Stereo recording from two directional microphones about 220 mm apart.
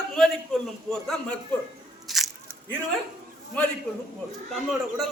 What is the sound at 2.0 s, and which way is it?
Biting, centre (ahead or behind).